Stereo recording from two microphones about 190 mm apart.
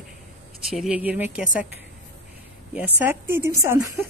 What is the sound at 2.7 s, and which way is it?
Speech, 10° right (ahead or behind).